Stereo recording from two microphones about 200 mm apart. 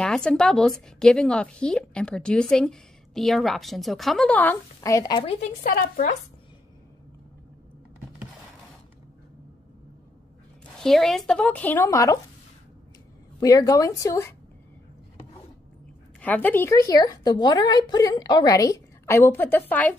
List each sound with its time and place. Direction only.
0.0 s a woman's voice: 5° left (ahead or behind); by 5.3 s 20° left (ahead or behind)
5.4 s speech: 45° left (ahead or behind)
10.8 s a woman's voice: centre (ahead or behind)
13.4 s a woman's voice: 20° left (ahead or behind)
16.2 s a woman's voice: 10° left (ahead or behind)